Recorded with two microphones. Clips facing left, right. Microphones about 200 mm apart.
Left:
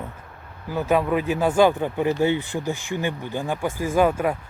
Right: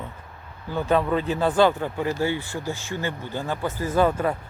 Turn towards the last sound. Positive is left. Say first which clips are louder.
# left 1 dB
turn(degrees=10)  # may be behind; listen again after turning